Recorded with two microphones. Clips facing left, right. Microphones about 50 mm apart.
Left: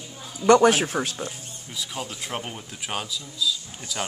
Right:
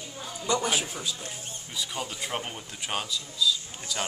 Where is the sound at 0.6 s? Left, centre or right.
Left.